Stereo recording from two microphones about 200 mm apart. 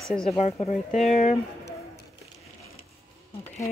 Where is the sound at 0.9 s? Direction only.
35° left (ahead or behind).